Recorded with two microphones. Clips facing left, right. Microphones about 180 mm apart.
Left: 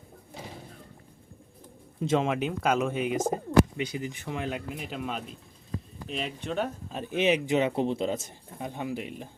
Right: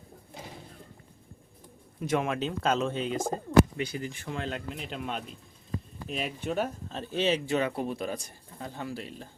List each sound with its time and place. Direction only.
2.0 s speech: 25° left (ahead or behind); by 6.7 s 5° right (ahead or behind)
6.8 s speech: 15° left (ahead or behind)